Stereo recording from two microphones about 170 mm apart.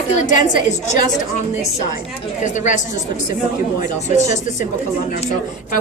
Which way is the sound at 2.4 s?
45° left (ahead or behind).